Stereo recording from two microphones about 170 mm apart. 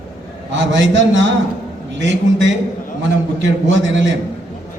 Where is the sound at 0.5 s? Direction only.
90° right.